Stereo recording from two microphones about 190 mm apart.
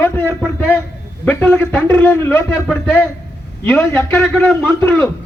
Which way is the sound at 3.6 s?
15° left (ahead or behind).